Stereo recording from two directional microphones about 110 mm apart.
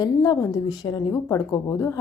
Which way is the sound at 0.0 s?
40° left (ahead or behind).